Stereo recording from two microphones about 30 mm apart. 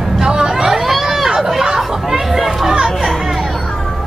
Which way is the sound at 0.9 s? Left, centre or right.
Centre.